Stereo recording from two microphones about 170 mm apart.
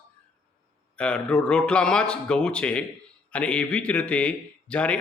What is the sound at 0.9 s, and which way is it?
A man's voice, 5° left (ahead or behind).